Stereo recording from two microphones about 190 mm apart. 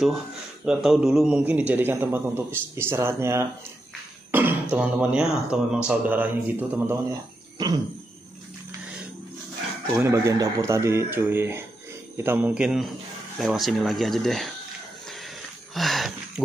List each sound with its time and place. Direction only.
0.7 s a man's voice: centre (ahead or behind)
6.9 s speech: 20° right (ahead or behind)
9.9 s a man's voice: 15° right (ahead or behind); by 14.5 s centre (ahead or behind)
15.7 s a sound: centre (ahead or behind)